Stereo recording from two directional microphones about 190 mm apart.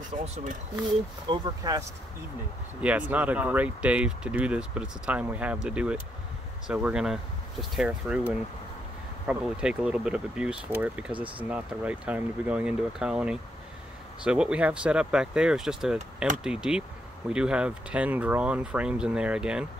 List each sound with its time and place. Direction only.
0.2 s speech: 40° right (ahead or behind)
1.3 s speech: 20° right (ahead or behind)
2.8 s speech: 5° right (ahead or behind)
9.3 s speech: 5° right (ahead or behind)